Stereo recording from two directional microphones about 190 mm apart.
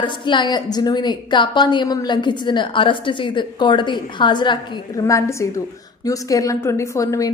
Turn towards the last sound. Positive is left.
turn(degrees=15)  # may be behind; listen again after turning